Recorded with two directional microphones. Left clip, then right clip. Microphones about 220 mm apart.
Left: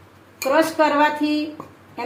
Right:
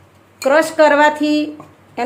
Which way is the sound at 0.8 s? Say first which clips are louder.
Right 6 dB; 45° right (ahead or behind).